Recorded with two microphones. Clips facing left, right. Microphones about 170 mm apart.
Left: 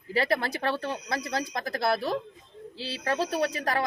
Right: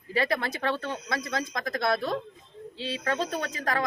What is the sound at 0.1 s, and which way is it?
A woman's voice, 30° left (ahead or behind).